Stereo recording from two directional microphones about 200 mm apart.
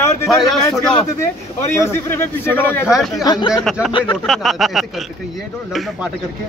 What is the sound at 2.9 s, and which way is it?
Speech, centre (ahead or behind).